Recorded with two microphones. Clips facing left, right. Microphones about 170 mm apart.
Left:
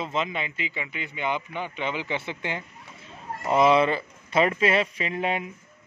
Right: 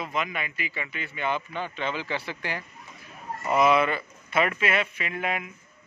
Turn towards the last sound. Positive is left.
turn(degrees=30)  # may be behind; listen again after turning